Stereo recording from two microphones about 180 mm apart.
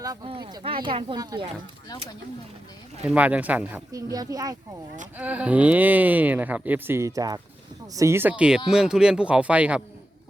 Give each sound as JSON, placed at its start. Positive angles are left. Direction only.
{"t": 0.0, "sound": "speech", "side_deg": -25}
{"t": 3.1, "sound": "speech", "side_deg": -5}
{"t": 3.9, "sound": "speech", "side_deg": -20}
{"t": 5.1, "sound": "speech", "side_deg": -10}